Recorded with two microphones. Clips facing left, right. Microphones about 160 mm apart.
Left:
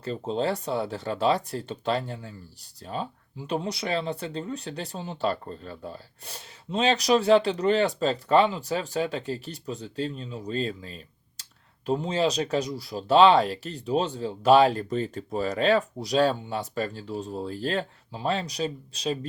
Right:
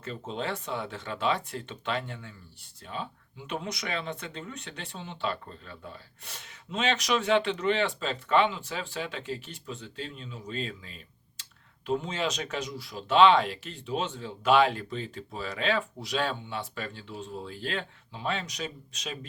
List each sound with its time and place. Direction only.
0.0 s speech: 35° left (ahead or behind)